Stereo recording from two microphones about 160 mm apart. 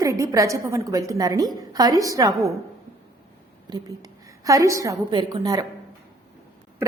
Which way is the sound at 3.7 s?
25° right (ahead or behind).